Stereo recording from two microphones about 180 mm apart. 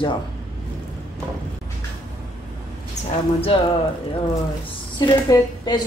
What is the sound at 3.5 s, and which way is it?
Speech, 30° left (ahead or behind).